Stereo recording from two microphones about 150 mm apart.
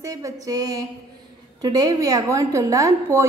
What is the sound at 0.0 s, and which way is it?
A woman's voice, 25° right (ahead or behind).